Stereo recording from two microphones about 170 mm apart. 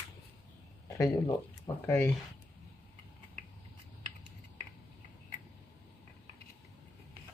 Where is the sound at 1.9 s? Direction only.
10° left (ahead or behind).